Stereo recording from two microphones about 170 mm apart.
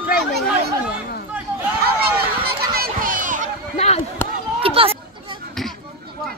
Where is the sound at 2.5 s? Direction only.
60° right (ahead or behind).